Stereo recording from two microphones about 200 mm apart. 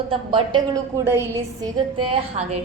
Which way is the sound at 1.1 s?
10° right (ahead or behind).